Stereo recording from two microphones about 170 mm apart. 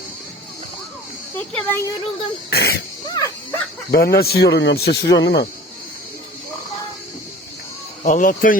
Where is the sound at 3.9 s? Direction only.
70° left (ahead or behind).